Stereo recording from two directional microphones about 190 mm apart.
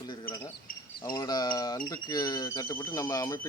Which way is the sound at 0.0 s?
25° left (ahead or behind).